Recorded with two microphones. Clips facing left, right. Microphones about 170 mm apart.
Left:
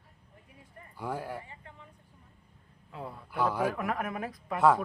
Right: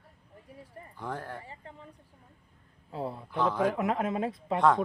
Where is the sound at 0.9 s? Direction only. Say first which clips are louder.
Left 2 dB; 10° left (ahead or behind).